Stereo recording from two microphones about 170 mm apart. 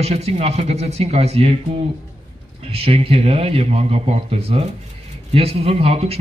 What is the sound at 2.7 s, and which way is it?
A man's voice, 35° right (ahead or behind).